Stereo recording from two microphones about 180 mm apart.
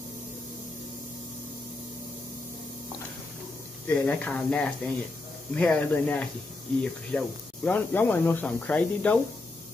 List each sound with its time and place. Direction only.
3.8 s speech: 10° left (ahead or behind)